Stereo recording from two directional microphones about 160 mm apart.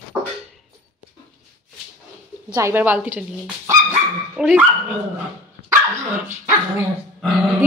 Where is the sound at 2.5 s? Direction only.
15° right (ahead or behind).